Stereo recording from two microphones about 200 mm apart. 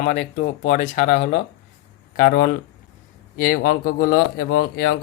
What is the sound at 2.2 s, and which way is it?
Speech, 45° left (ahead or behind).